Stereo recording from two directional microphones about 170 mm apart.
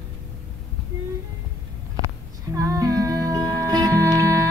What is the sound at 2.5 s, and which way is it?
Music, 20° right (ahead or behind).